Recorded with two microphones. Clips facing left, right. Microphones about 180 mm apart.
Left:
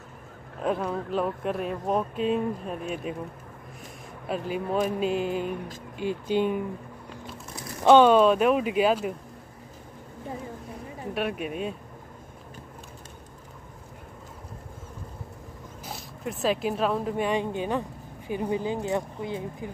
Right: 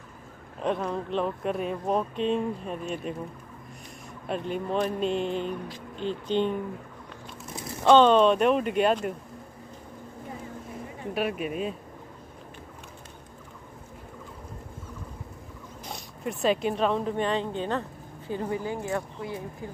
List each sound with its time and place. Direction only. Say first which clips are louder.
0.6 s speech: left 1 dB; 5° left (ahead or behind)
4.3 s speech: left 1 dB; 5° left (ahead or behind)
7.8 s speech: left 1 dB; 10° left (ahead or behind)
11.1 s speech: right 1 dB; centre (ahead or behind)
15.8 s speech: right 1 dB; centre (ahead or behind)